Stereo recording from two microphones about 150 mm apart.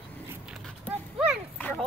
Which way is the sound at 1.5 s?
10° left (ahead or behind).